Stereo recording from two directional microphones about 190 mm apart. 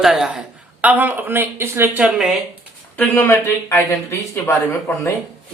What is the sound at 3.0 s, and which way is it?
Speech, 10° left (ahead or behind).